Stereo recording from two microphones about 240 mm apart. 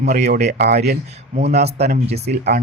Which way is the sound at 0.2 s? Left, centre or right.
Right.